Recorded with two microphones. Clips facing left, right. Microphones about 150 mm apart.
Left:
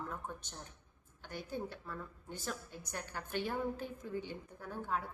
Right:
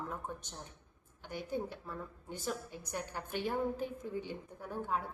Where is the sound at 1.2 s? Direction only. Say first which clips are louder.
Right 3 dB; 15° right (ahead or behind).